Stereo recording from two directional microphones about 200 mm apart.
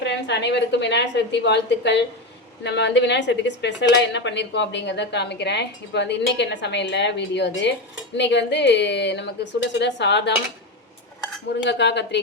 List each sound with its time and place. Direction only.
0.0 s a woman's voice: 60° left (ahead or behind)
11.6 s a woman's voice: 60° left (ahead or behind)